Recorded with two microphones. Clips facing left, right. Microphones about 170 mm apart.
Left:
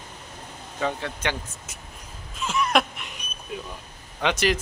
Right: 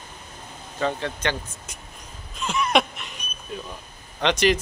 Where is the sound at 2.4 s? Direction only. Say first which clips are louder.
Right 1 dB; centre (ahead or behind).